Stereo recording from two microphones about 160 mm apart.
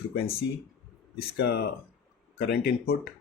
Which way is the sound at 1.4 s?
90° left.